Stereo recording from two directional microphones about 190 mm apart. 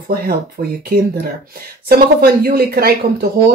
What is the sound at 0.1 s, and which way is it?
Speech, 50° right (ahead or behind).